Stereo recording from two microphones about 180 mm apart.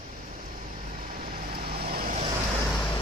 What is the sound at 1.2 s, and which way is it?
Vehicle, 55° right (ahead or behind).